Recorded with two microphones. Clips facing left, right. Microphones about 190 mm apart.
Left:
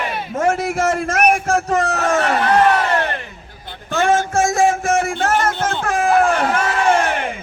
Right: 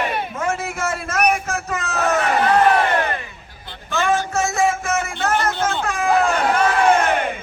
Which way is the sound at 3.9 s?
50° left (ahead or behind).